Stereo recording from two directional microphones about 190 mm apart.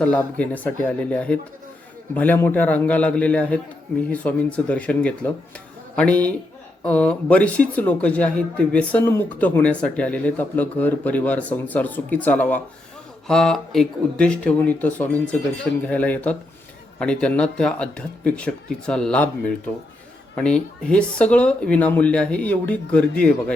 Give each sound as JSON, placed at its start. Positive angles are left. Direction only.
{"t": 0.0, "sound": "speech", "side_deg": 5}
{"t": 20.8, "sound": "speech", "side_deg": 5}